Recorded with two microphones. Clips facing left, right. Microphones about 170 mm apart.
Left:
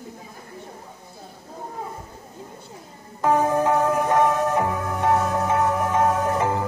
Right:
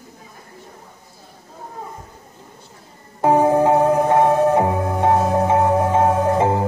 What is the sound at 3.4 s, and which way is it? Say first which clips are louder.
Music: right 5 dB; 30° right (ahead or behind).